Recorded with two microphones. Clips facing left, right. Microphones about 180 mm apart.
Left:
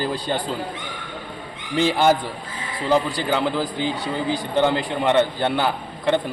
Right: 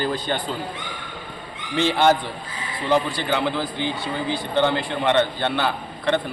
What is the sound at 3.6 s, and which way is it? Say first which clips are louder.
Speech: left 2 dB; 40° left (ahead or behind).